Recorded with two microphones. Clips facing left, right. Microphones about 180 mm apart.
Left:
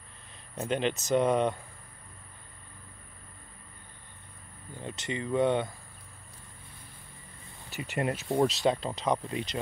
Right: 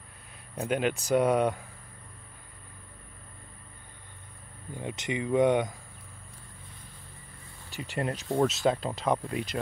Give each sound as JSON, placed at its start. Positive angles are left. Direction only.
{"t": 0.6, "sound": "speech", "side_deg": -10}
{"t": 4.7, "sound": "speech", "side_deg": -15}
{"t": 7.7, "sound": "speech", "side_deg": -35}
{"t": 8.0, "sound": "speech", "side_deg": 5}